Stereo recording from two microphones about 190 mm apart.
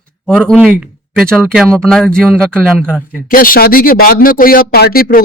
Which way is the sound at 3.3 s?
50° left (ahead or behind).